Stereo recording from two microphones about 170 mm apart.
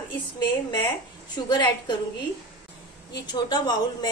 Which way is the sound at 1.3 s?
25° left (ahead or behind).